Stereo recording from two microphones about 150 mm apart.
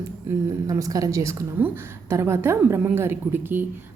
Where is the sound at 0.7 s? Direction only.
25° right (ahead or behind).